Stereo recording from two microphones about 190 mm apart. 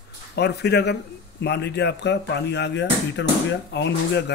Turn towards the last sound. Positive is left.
turn(degrees=65)  # may be behind; listen again after turning